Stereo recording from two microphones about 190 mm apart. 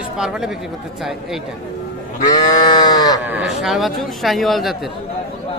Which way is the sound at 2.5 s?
20° left (ahead or behind).